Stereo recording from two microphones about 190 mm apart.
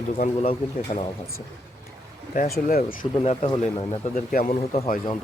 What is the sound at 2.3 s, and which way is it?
Speech, 45° left (ahead or behind).